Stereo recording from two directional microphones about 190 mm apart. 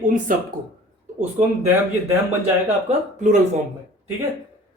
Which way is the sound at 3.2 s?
40° right (ahead or behind).